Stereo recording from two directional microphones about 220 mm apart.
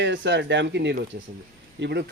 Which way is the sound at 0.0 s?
55° right (ahead or behind).